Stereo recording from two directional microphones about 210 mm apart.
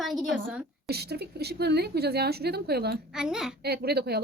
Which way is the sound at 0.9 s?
50° right (ahead or behind).